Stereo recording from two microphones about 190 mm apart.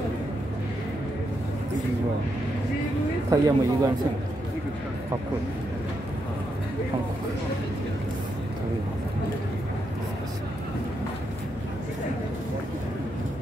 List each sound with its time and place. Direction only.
3.3 s a man's voice: 20° right (ahead or behind)